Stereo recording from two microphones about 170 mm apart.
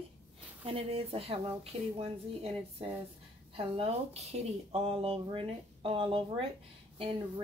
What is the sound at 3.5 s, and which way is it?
Speech, 35° right (ahead or behind).